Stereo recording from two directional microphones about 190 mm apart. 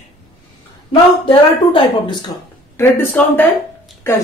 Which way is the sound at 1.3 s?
25° left (ahead or behind).